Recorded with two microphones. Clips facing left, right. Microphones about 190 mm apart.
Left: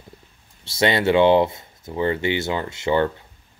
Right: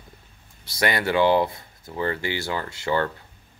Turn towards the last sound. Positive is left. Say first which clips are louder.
# left 4 dB
turn(degrees=20)  # may be behind; listen again after turning